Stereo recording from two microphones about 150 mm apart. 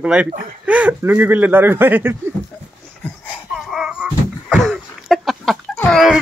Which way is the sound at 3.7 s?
5° right (ahead or behind).